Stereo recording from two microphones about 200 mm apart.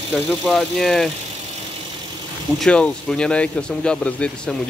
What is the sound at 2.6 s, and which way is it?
Speech, 5° left (ahead or behind).